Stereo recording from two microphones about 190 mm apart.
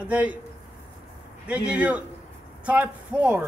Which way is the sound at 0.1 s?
10° right (ahead or behind).